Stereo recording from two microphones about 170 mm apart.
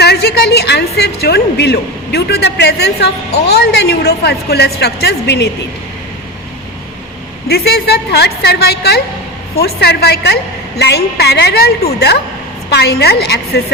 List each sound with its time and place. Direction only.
0.0 s a woman's voice: 75° left (ahead or behind)
7.4 s a woman's voice: 70° left (ahead or behind)
12.7 s a woman's voice: 70° left (ahead or behind)